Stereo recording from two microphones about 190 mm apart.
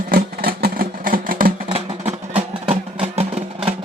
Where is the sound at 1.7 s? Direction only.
30° right (ahead or behind).